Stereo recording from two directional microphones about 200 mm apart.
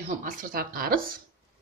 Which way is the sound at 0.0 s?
45° right (ahead or behind).